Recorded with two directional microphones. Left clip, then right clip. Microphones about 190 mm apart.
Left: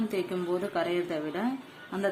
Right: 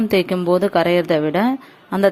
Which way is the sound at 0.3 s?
50° right (ahead or behind).